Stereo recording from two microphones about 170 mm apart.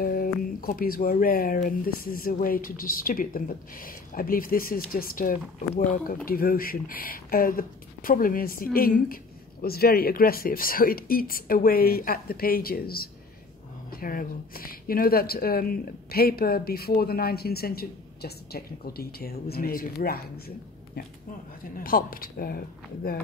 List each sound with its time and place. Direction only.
0.0 s speech: 60° left (ahead or behind)